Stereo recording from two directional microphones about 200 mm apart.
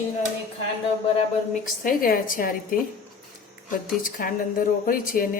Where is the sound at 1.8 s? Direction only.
45° left (ahead or behind).